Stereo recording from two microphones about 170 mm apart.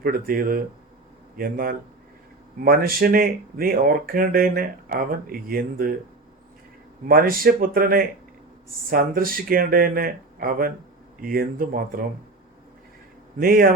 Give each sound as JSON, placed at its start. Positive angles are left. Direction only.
{"t": 0.0, "sound": "speech", "side_deg": -60}
{"t": 7.1, "sound": "speech", "side_deg": -60}
{"t": 13.4, "sound": "speech", "side_deg": -60}